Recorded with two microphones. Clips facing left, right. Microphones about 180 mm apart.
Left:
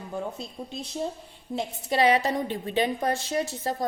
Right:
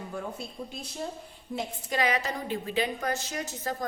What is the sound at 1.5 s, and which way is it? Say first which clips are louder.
A woman's voice: left 4 dB; 30° left (ahead or behind).